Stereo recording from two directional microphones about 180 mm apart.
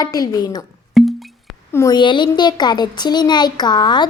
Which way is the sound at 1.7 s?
20° left (ahead or behind).